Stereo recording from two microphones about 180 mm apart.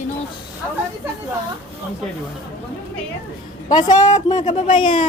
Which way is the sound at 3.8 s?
40° left (ahead or behind).